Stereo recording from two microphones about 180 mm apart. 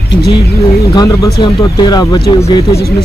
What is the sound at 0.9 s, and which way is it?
Speech, 25° left (ahead or behind).